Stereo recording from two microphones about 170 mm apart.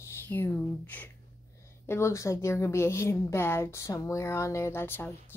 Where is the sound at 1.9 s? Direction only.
15° left (ahead or behind).